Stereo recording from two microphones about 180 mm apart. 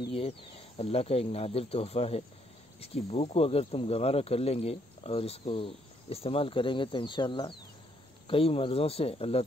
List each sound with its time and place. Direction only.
0.1 s speech: 30° left (ahead or behind)